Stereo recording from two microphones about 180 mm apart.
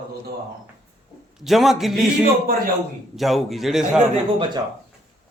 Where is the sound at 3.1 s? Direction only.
Centre (ahead or behind).